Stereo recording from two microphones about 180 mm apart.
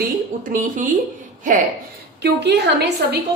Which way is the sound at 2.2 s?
65° right (ahead or behind).